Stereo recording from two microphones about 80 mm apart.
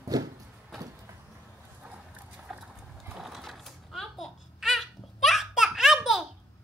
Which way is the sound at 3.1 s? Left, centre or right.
Centre.